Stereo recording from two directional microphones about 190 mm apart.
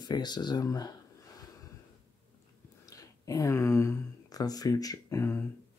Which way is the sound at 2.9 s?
15° left (ahead or behind).